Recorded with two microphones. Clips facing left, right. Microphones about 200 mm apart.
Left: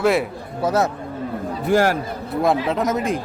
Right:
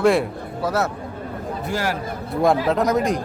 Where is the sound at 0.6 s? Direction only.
20° left (ahead or behind).